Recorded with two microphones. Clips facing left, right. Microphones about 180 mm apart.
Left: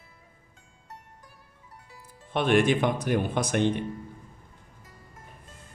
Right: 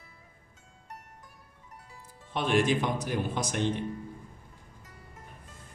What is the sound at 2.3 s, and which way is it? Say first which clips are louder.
Speech: left 4 dB; 60° left (ahead or behind).